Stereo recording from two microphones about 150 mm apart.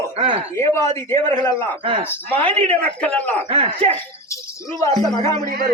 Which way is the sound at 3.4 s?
35° right (ahead or behind).